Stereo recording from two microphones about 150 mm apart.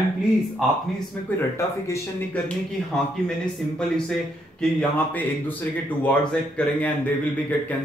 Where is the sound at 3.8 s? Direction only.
5° left (ahead or behind).